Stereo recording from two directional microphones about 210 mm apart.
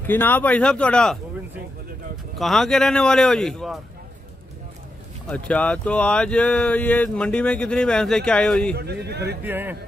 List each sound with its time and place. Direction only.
0.0 s speech: 10° left (ahead or behind)
2.3 s speech: centre (ahead or behind)
5.3 s speech: 5° left (ahead or behind)
8.7 s speech: 50° right (ahead or behind)
9.4 s speech: 10° right (ahead or behind)